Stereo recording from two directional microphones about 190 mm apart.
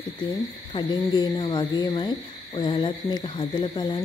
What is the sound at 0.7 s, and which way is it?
Speech, 25° left (ahead or behind).